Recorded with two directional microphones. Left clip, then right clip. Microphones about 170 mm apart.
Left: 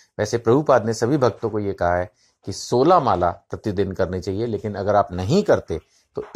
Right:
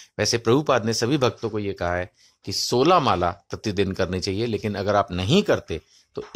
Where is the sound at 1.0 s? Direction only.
40° right (ahead or behind).